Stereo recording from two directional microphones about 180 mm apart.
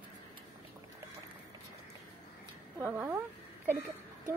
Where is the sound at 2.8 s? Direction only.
15° right (ahead or behind).